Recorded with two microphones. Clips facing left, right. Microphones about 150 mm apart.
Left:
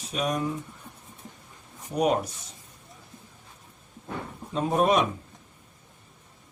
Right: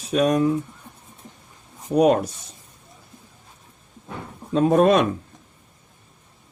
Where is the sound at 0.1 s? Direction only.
85° right.